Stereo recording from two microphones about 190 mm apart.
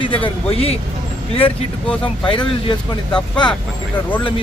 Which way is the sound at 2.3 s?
25° left (ahead or behind).